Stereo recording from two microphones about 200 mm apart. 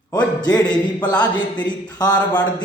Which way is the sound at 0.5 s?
20° left (ahead or behind).